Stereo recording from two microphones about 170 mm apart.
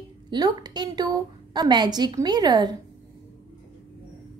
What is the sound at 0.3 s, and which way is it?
A woman's voice, 25° right (ahead or behind).